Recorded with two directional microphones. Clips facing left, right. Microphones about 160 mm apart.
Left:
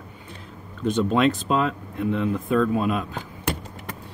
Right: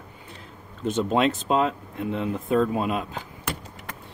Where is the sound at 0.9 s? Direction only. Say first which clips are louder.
Left 2 dB; 25° right (ahead or behind).